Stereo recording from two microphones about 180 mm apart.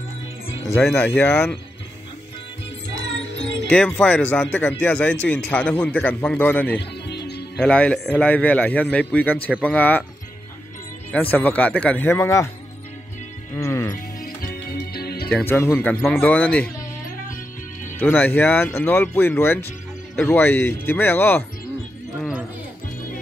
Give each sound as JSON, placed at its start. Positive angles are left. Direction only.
{"t": 0.9, "sound": "speech", "side_deg": 10}
{"t": 3.6, "sound": "speech", "side_deg": 5}
{"t": 6.8, "sound": "music", "side_deg": 65}
{"t": 7.6, "sound": "speech", "side_deg": 5}
{"t": 11.1, "sound": "speech", "side_deg": 10}
{"t": 13.6, "sound": "music", "side_deg": 15}
{"t": 13.9, "sound": "music", "side_deg": 55}
{"t": 15.3, "sound": "speech", "side_deg": 10}
{"t": 17.9, "sound": "speech", "side_deg": 10}